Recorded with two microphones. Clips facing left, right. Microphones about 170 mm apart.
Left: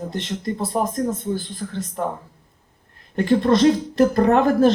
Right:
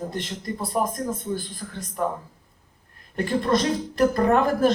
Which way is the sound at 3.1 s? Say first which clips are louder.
Left 5 dB; 25° left (ahead or behind).